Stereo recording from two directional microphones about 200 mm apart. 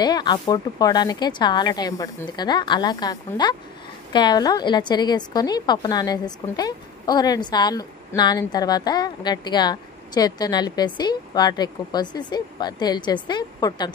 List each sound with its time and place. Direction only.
0.0 s a woman's voice: 20° left (ahead or behind)